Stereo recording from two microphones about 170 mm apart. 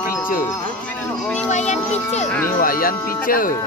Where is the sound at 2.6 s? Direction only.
55° left (ahead or behind).